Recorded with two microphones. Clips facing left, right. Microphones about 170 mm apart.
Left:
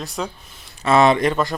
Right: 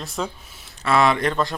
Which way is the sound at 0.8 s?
25° left (ahead or behind).